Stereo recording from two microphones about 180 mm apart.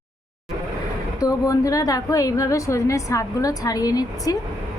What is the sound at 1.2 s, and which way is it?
A woman's voice, 20° left (ahead or behind).